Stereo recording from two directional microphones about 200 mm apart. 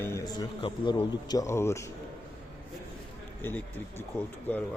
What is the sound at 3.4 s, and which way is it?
Speech, 10° left (ahead or behind).